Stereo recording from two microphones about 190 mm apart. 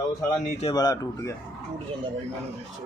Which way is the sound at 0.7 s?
20° left (ahead or behind).